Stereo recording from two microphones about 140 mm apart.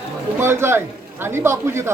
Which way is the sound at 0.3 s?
15° right (ahead or behind).